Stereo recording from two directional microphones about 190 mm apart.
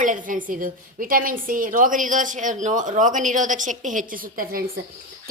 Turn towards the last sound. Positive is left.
turn(degrees=-45)  # may be behind; listen again after turning